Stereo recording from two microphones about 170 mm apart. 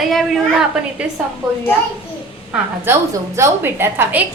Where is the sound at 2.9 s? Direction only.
15° right (ahead or behind).